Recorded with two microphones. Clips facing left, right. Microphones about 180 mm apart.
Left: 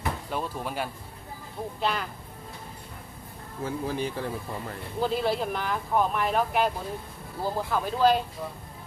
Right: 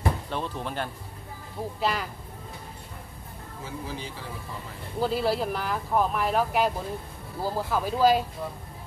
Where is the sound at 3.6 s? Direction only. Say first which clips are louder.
Left 7 dB; 55° left (ahead or behind).